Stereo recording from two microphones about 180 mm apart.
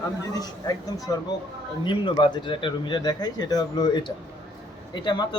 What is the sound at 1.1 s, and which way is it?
Speech, 20° left (ahead or behind).